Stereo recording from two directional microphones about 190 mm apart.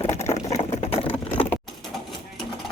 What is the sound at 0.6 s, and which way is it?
Vehicle, 30° left (ahead or behind).